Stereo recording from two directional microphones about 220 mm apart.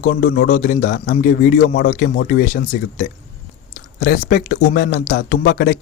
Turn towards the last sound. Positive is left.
turn(degrees=45)  # may be behind; listen again after turning